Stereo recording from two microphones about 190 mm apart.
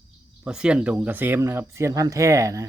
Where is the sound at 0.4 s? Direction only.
5° right (ahead or behind).